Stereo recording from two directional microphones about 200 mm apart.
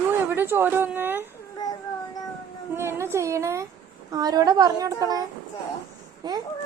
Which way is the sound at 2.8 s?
15° right (ahead or behind).